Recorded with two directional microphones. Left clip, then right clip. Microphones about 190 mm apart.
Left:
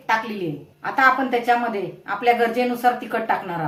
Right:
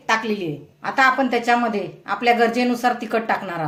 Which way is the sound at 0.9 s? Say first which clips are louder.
Even; 55° right (ahead or behind).